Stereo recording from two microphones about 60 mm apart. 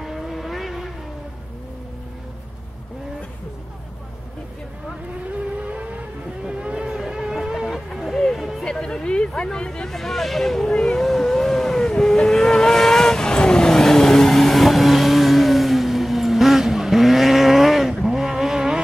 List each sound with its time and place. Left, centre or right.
0.0 s vehicle: centre
5.6 s vehicle: right
7.0 s a sound: centre
8.6 s a sound: centre
9.8 s speech: centre
11.1 s vehicle: centre